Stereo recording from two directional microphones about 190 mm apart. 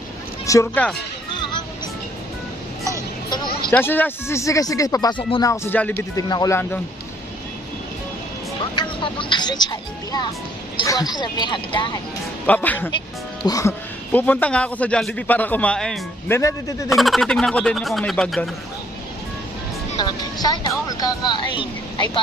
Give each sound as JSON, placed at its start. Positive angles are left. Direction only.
{"t": 0.5, "sound": "a man's voice", "side_deg": 15}
{"t": 3.3, "sound": "hubbub", "side_deg": 25}
{"t": 3.7, "sound": "a man's voice", "side_deg": 10}
{"t": 6.2, "sound": "a man's voice", "side_deg": 20}
{"t": 9.0, "sound": "speech", "side_deg": 25}
{"t": 12.4, "sound": "a man's voice", "side_deg": 10}
{"t": 16.3, "sound": "a man's voice", "side_deg": 15}
{"t": 16.9, "sound": "speech", "side_deg": 0}
{"t": 20.0, "sound": "speech", "side_deg": 20}